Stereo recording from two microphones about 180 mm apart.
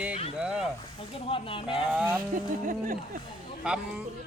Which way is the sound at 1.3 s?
30° left (ahead or behind).